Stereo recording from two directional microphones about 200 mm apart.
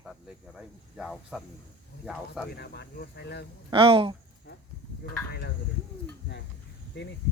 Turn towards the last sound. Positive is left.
turn(degrees=55)  # may be behind; listen again after turning